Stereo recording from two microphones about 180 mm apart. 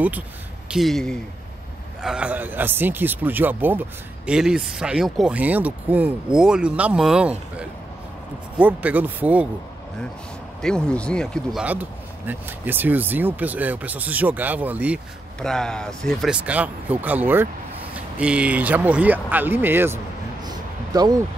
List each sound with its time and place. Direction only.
0.7 s speech: centre (ahead or behind)
10.6 s speech: 5° left (ahead or behind)
11.6 s speech: 10° right (ahead or behind)
15.4 s speech: 5° left (ahead or behind); by 20.0 s 10° right (ahead or behind)
20.4 s a sound: 20° right (ahead or behind)